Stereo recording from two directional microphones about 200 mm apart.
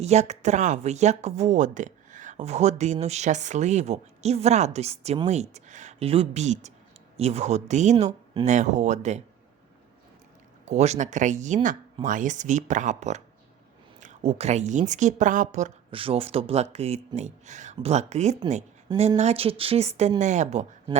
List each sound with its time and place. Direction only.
0.0 s speech: 35° right (ahead or behind)
10.7 s speech: 35° right (ahead or behind)